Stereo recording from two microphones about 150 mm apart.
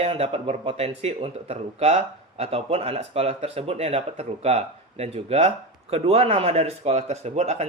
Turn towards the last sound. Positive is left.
turn(degrees=-50)  # may be behind; listen again after turning